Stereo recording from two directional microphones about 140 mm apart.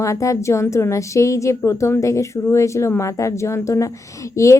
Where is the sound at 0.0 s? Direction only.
20° left (ahead or behind).